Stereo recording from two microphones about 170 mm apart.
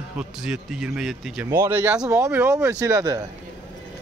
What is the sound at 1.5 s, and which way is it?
Speech, 15° right (ahead or behind).